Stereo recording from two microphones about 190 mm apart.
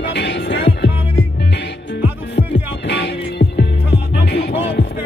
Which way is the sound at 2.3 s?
65° left (ahead or behind).